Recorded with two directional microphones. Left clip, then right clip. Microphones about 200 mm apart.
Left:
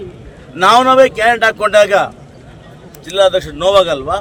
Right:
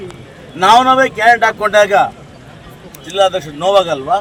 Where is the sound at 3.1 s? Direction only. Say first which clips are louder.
Left 2 dB; 20° left (ahead or behind).